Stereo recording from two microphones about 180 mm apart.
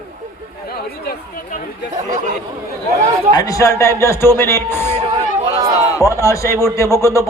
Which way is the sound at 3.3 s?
20° left (ahead or behind).